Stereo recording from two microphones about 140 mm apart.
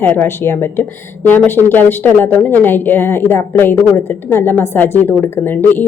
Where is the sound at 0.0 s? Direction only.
15° left (ahead or behind).